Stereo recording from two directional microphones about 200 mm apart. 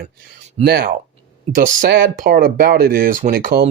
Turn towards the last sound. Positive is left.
turn(degrees=-45)  # may be behind; listen again after turning